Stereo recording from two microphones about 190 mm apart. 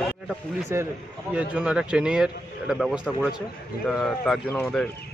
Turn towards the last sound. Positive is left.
turn(degrees=5)  # may be behind; listen again after turning